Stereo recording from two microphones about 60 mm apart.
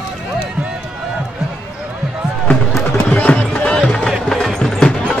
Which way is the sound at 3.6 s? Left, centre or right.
Left.